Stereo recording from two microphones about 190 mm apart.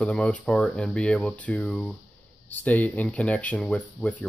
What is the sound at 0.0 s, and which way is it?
Speech, 5° left (ahead or behind).